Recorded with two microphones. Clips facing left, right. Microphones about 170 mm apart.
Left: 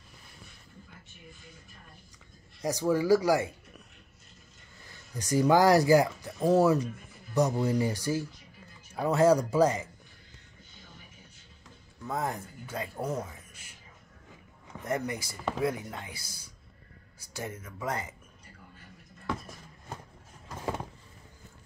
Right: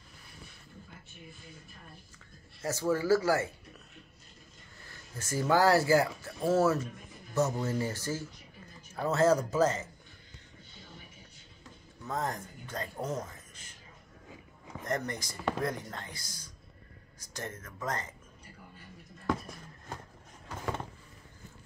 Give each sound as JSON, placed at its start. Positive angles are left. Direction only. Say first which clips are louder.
{"t": 2.6, "sound": "speech", "louder": "left 3 dB", "side_deg": 15}
{"t": 5.1, "sound": "speech", "louder": "left 5 dB", "side_deg": 15}
{"t": 12.0, "sound": "speech", "louder": "left 2 dB", "side_deg": 10}
{"t": 14.8, "sound": "speech", "louder": "left 2 dB", "side_deg": 10}